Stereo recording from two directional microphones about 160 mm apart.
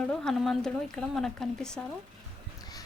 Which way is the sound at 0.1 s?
5° left (ahead or behind).